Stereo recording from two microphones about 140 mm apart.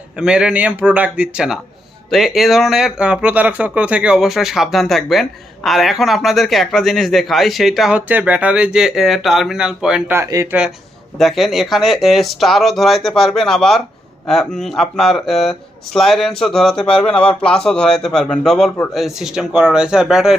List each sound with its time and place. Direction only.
0.2 s speech: 5° right (ahead or behind)
10.2 s speech: 20° right (ahead or behind)
11.2 s speech: centre (ahead or behind)